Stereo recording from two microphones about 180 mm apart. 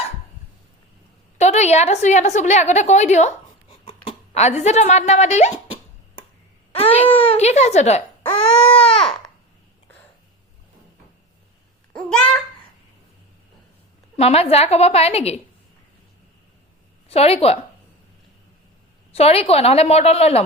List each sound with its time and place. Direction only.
1.4 s a woman's voice: 40° left (ahead or behind)
3.7 s a sound: 25° left (ahead or behind)
6.7 s a woman's voice: 30° left (ahead or behind)
8.9 s baby cry: 5° left (ahead or behind)
11.9 s a child's voice: 5° left (ahead or behind)
14.2 s a woman's voice: 35° left (ahead or behind)
17.1 s a woman's voice: 35° left (ahead or behind)
19.1 s a woman's voice: 35° left (ahead or behind)